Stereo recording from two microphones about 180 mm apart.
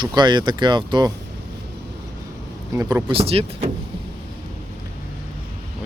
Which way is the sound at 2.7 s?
15° right (ahead or behind).